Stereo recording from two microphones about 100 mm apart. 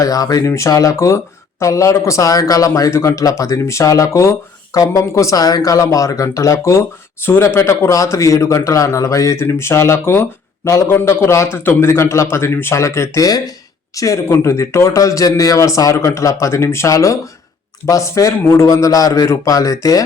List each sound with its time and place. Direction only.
0.0 s speech: 35° left (ahead or behind)